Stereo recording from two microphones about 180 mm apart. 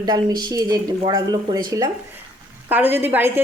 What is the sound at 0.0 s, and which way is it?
Speech, 20° right (ahead or behind).